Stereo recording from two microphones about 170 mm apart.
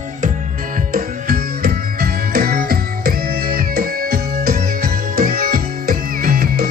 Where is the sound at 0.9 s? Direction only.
60° right (ahead or behind).